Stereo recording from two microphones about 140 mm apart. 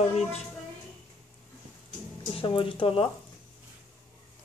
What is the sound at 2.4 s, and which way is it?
Speech, 40° left (ahead or behind).